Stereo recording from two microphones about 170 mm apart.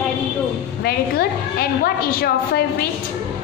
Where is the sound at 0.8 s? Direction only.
65° left (ahead or behind).